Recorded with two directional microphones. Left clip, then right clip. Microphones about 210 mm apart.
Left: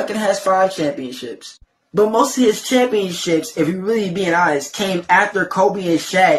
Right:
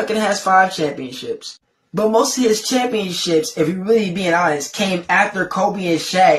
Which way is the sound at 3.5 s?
10° left (ahead or behind).